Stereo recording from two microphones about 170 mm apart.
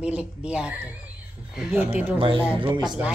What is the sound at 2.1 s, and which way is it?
Speech, 30° right (ahead or behind).